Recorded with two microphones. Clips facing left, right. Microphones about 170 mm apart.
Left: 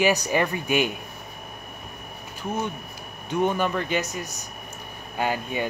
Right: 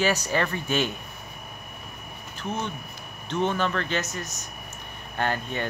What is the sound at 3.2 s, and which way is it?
Speech, 10° left (ahead or behind).